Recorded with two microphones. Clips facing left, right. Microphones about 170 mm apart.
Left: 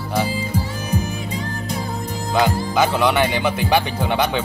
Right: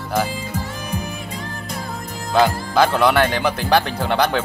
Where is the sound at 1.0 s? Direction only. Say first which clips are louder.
Left 3 dB; 50° right (ahead or behind).